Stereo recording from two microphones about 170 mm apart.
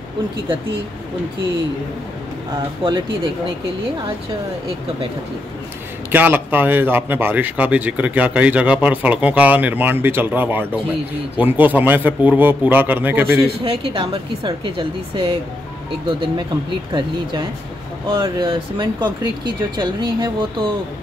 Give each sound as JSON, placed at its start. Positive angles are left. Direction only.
{"t": 2.8, "sound": "speech", "side_deg": -30}
{"t": 6.1, "sound": "speech", "side_deg": -10}
{"t": 13.5, "sound": "speech", "side_deg": -35}